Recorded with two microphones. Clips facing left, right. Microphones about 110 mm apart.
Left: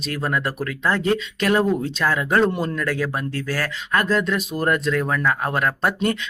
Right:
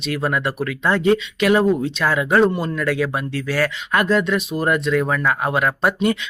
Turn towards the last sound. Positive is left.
turn(degrees=-5)  # may be behind; listen again after turning